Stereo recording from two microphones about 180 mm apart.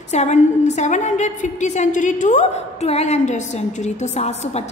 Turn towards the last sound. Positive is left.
turn(degrees=35)  # may be behind; listen again after turning